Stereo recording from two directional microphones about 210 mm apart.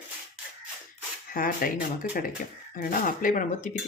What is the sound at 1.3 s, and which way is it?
Speech, 45° left (ahead or behind).